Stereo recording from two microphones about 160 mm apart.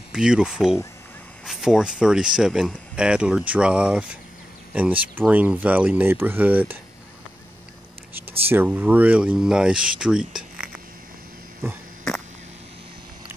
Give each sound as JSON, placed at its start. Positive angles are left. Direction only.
{"t": 0.1, "sound": "speech", "side_deg": -5}
{"t": 8.3, "sound": "speech", "side_deg": -10}